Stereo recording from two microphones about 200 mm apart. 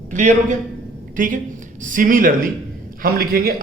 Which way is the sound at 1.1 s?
40° right (ahead or behind).